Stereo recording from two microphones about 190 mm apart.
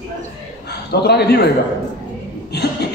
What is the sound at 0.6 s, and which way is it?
Speech, 60° left (ahead or behind).